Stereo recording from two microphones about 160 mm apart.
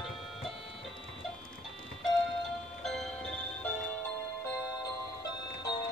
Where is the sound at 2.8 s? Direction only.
Centre (ahead or behind).